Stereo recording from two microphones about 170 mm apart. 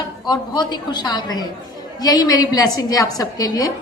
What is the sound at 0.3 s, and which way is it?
A woman's voice, 25° left (ahead or behind).